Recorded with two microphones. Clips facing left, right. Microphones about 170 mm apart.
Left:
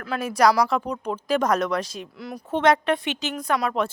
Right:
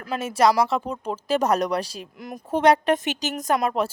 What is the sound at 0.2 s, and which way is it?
Speech, 25° right (ahead or behind).